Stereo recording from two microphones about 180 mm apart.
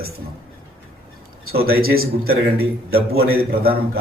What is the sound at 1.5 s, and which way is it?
A man's voice, 55° right (ahead or behind).